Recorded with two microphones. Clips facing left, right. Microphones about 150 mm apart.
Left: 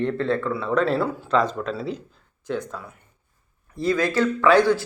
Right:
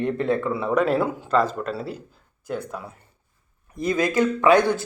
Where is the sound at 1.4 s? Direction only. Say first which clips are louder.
Even; 5° right (ahead or behind).